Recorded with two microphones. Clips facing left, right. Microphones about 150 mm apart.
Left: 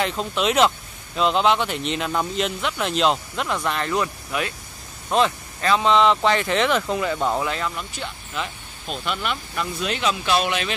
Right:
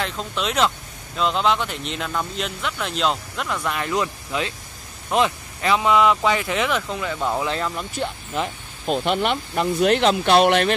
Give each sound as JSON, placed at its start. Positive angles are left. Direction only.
{"t": 0.0, "sound": "speech", "side_deg": 5}
{"t": 3.6, "sound": "speech", "side_deg": -10}
{"t": 7.4, "sound": "speech", "side_deg": -25}
{"t": 8.0, "sound": "speech", "side_deg": -45}